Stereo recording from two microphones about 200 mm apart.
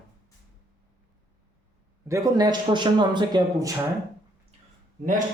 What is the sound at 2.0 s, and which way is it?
A man's voice, 15° right (ahead or behind).